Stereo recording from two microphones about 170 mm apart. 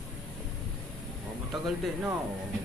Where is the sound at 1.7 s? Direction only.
Centre (ahead or behind).